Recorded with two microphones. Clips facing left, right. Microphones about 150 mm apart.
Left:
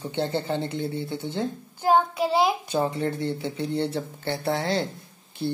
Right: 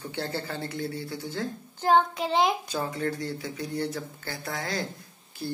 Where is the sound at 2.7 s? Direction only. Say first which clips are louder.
Left 5 dB; 25° left (ahead or behind).